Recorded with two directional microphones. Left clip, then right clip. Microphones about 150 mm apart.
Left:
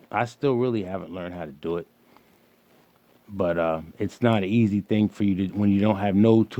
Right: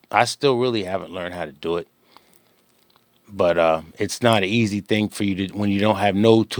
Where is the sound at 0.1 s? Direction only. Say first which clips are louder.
Right 6 dB; 30° right (ahead or behind).